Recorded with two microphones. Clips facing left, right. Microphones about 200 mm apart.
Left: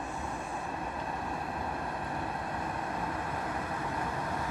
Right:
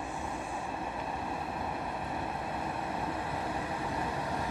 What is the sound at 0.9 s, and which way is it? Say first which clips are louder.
Vehicle: even; 5° right (ahead or behind).